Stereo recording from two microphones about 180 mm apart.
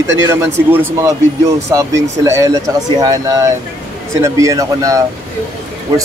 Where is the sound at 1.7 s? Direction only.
15° right (ahead or behind).